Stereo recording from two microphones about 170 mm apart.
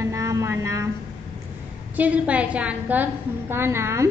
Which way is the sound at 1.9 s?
10° right (ahead or behind).